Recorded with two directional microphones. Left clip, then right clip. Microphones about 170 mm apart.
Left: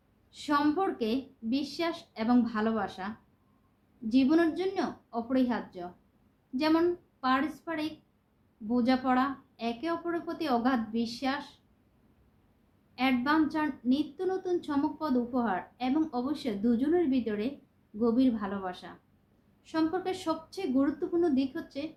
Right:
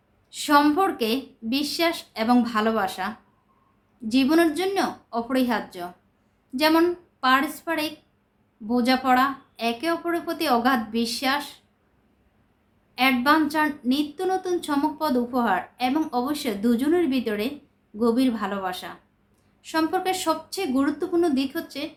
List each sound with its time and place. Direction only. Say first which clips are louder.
0.3 s a woman's voice: right 9 dB; 15° right (ahead or behind)
4.1 s a woman's voice: right 6 dB; 15° right (ahead or behind)
13.0 s a woman's voice: right 8 dB; 20° right (ahead or behind)